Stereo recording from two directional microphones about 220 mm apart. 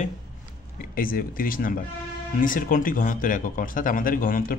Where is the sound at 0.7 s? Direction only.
40° left (ahead or behind).